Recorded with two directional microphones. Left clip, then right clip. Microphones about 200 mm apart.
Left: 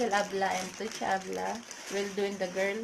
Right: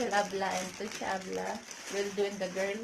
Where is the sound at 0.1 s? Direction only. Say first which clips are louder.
Left 2 dB; 35° left (ahead or behind).